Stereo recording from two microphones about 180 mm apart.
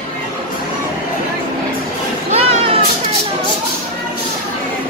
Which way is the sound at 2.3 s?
35° right (ahead or behind).